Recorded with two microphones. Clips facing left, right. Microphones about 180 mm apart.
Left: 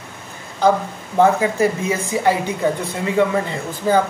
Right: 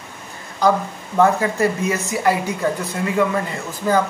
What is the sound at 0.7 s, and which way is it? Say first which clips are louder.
Speech: left 1 dB; 25° left (ahead or behind).